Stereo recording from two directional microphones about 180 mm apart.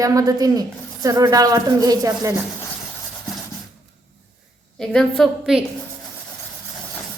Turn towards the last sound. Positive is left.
turn(degrees=0)  # may be behind; listen again after turning